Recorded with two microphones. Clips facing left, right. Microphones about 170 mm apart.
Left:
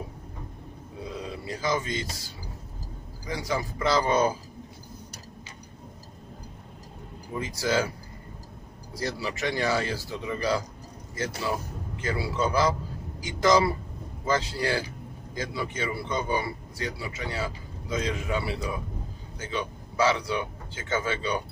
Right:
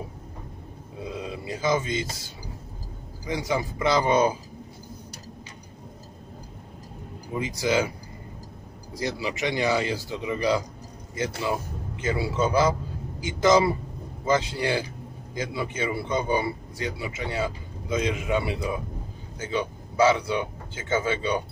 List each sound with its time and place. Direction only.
1.2 s a sound: 20° right (ahead or behind)
3.3 s speech: 20° right (ahead or behind)
7.3 s speech: 15° right (ahead or behind)
9.0 s speech: 15° right (ahead or behind)